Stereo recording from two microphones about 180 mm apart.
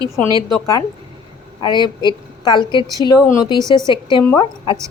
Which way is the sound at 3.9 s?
25° left (ahead or behind).